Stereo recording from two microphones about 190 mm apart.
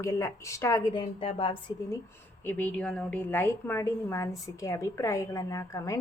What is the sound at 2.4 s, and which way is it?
A woman's voice, 10° left (ahead or behind).